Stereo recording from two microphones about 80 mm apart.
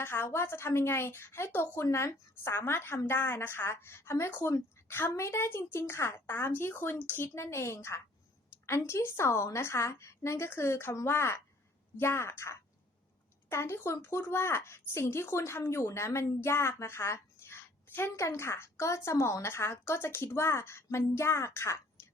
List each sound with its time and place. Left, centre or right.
0.0 s speech: left
4.3 s speech: left